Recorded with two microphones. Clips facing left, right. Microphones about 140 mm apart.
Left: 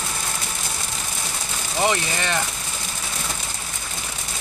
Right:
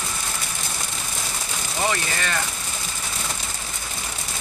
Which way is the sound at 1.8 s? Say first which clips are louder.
Left 3 dB; 20° left (ahead or behind).